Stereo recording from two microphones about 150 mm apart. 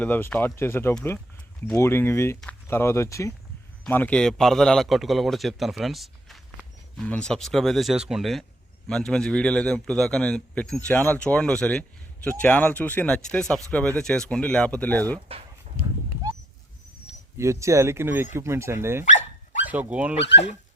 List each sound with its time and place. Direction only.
0.0 s a man's voice: 10° left (ahead or behind)
15.3 s speech: 40° right (ahead or behind)
17.3 s speech: 20° right (ahead or behind)